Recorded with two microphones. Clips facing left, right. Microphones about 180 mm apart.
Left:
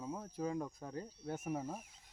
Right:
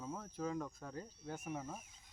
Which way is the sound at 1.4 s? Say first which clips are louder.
Left 4 dB; 35° left (ahead or behind).